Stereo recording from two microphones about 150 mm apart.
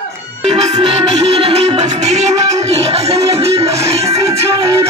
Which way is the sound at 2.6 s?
45° right (ahead or behind).